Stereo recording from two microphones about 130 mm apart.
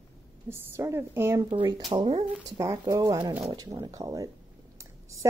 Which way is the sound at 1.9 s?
40° right (ahead or behind).